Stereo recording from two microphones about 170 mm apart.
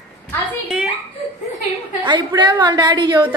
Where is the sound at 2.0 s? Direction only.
25° right (ahead or behind).